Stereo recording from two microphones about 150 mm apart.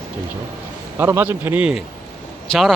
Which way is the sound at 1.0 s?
15° right (ahead or behind).